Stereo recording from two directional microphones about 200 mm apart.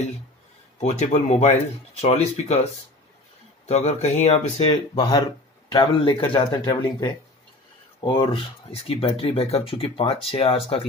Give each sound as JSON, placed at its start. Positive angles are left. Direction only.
{"t": 0.7, "sound": "speech", "side_deg": 35}
{"t": 3.6, "sound": "speech", "side_deg": 35}